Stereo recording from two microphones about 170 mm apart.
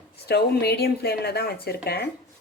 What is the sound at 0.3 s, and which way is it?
Speech, 70° left (ahead or behind).